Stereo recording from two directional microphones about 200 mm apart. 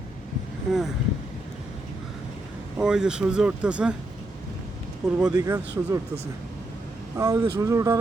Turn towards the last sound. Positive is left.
turn(degrees=-15)  # may be behind; listen again after turning